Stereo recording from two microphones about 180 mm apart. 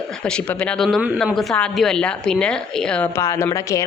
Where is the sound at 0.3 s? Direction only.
5° left (ahead or behind).